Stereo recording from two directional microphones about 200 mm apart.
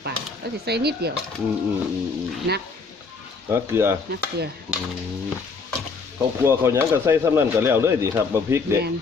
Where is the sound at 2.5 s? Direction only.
55° right (ahead or behind).